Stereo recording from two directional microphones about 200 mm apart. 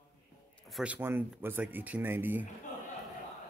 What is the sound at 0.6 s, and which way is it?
Speech, 5° right (ahead or behind).